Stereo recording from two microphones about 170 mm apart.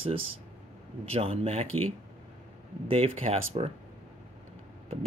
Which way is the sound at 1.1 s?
35° right (ahead or behind).